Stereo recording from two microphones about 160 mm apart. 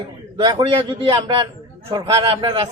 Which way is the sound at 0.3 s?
30° right (ahead or behind).